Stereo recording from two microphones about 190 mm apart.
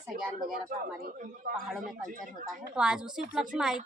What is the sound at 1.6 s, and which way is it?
A woman's voice, centre (ahead or behind).